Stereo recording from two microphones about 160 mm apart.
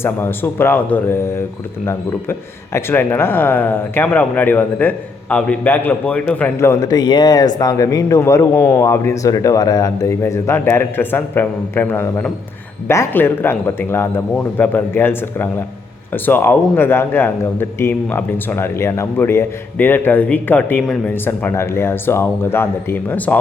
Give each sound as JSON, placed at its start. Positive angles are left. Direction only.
{"t": 0.0, "sound": "a man's voice", "side_deg": 15}
{"t": 6.6, "sound": "a man's voice", "side_deg": 20}